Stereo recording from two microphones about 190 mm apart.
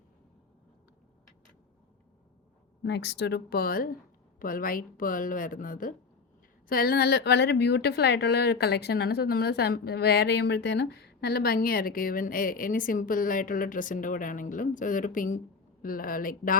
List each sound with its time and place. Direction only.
2.8 s a woman's voice: 65° left (ahead or behind); by 16.6 s 45° left (ahead or behind)